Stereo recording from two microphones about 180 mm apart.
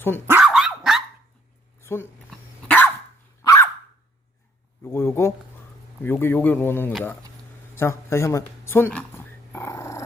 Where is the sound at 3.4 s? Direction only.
15° left (ahead or behind).